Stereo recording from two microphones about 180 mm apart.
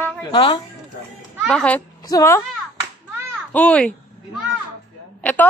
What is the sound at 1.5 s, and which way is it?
Speech, 5° left (ahead or behind).